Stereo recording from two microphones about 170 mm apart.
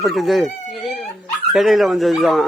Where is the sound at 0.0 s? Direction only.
Centre (ahead or behind).